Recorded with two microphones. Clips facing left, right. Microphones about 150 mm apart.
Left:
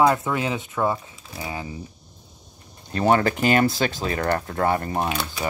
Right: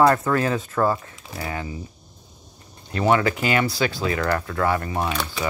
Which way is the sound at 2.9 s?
40° left (ahead or behind).